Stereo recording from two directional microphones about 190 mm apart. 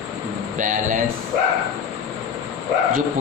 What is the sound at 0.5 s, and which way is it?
Speech, 40° right (ahead or behind).